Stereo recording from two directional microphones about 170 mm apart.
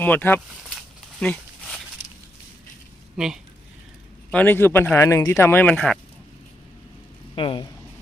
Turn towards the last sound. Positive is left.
turn(degrees=30)  # may be behind; listen again after turning